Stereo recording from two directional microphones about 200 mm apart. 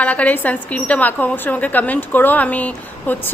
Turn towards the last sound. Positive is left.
turn(degrees=5)  # may be behind; listen again after turning